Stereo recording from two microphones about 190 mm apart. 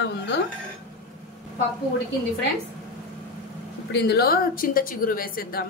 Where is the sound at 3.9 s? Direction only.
60° left (ahead or behind).